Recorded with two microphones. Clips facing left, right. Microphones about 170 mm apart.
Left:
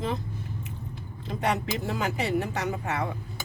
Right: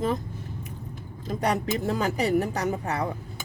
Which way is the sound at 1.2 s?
40° right (ahead or behind).